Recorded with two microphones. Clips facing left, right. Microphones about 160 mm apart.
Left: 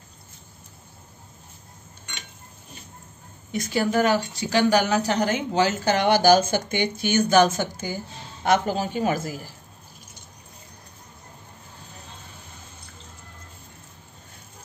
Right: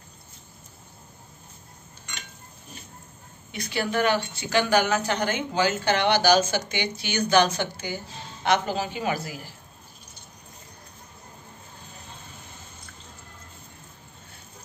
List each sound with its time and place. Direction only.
3.5 s a woman's voice: 45° left (ahead or behind)